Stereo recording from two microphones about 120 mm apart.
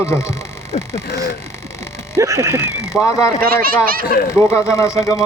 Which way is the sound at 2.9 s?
5° right (ahead or behind).